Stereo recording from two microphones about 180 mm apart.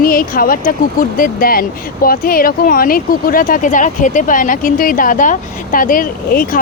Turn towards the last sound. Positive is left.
turn(degrees=50)  # may be behind; listen again after turning